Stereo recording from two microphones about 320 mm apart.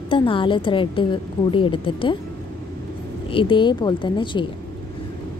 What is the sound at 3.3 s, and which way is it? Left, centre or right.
A woman's voice, centre.